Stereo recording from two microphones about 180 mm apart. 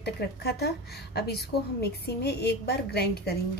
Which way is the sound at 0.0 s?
65° left (ahead or behind).